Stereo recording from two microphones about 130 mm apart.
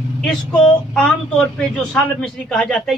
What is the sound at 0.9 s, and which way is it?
A man's voice, 5° left (ahead or behind).